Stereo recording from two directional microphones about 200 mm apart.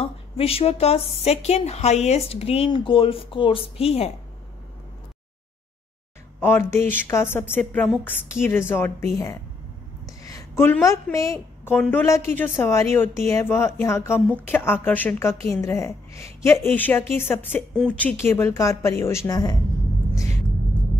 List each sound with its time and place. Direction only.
0.0 s a woman's voice: 30° left (ahead or behind)
6.4 s a woman's voice: 10° left (ahead or behind)
10.0 s a sound: 15° left (ahead or behind)
11.3 s a woman's voice: 5° left (ahead or behind)